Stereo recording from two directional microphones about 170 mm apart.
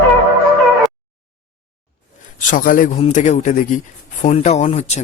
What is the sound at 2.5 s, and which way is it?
A man's voice, 55° left (ahead or behind).